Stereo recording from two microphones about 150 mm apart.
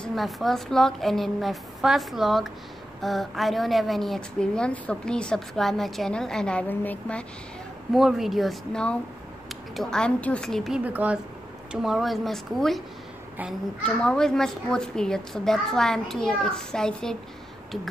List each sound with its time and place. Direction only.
0.0 s a woman's voice: centre (ahead or behind)
7.9 s a woman's voice: centre (ahead or behind)
10.8 s a woman's voice: 10° right (ahead or behind)
13.8 s a woman's voice: 5° left (ahead or behind)